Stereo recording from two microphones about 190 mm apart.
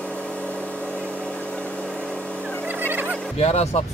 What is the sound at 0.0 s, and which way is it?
Vehicle, 5° left (ahead or behind).